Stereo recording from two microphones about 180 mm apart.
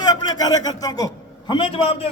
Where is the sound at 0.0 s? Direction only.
20° left (ahead or behind).